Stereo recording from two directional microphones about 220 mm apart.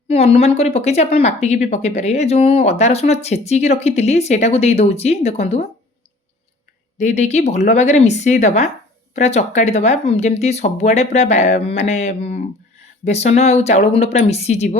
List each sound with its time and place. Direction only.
0.1 s speech: 25° left (ahead or behind)
7.0 s speech: 30° left (ahead or behind)